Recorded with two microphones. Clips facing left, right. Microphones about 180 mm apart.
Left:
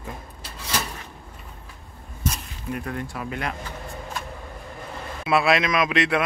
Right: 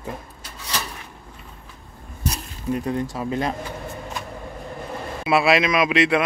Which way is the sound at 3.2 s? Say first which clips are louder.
Right 6 dB; 25° right (ahead or behind).